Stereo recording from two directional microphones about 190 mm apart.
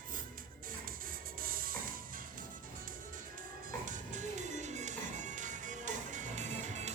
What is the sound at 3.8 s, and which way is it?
Music, 40° right (ahead or behind).